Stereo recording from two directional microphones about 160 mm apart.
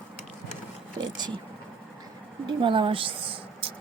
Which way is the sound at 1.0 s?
30° right (ahead or behind).